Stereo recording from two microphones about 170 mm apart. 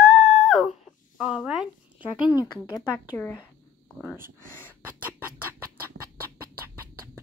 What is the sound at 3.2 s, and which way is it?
Speech, 10° left (ahead or behind).